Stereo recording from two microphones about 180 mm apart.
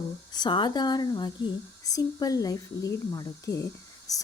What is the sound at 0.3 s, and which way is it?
Speech, 25° left (ahead or behind).